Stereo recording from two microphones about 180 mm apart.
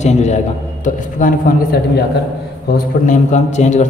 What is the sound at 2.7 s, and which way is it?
A man's voice, 45° left (ahead or behind).